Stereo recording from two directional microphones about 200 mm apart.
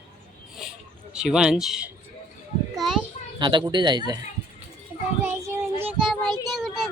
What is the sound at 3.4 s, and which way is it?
Speech, 25° right (ahead or behind).